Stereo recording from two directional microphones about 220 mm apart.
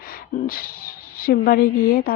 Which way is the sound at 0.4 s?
40° left (ahead or behind).